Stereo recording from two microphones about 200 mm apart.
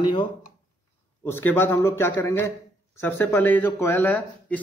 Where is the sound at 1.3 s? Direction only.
10° left (ahead or behind).